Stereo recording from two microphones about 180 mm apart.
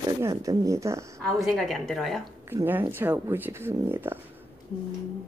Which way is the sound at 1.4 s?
Centre (ahead or behind).